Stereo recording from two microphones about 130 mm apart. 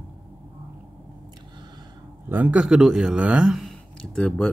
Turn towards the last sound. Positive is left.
turn(degrees=5)  # may be behind; listen again after turning